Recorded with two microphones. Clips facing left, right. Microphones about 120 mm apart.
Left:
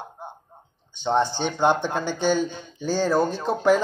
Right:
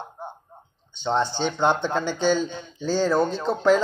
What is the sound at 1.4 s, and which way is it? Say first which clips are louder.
Speech: left 1 dB; 15° left (ahead or behind).